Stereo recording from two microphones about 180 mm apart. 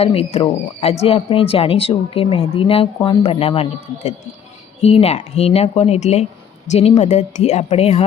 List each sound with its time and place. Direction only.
0.0 s speech: 35° left (ahead or behind)